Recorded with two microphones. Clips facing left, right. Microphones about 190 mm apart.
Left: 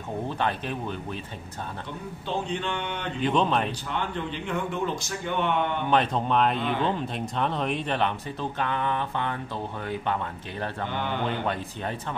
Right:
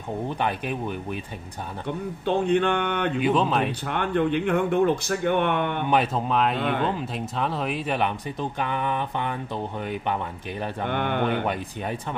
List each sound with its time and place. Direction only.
0.4 s speech: 15° right (ahead or behind)
2.2 s speech: 55° right (ahead or behind)
3.2 s speech: 5° right (ahead or behind)
3.8 s speech: 55° right (ahead or behind)
5.9 s speech: 5° right (ahead or behind)
10.9 s speech: 60° right (ahead or behind)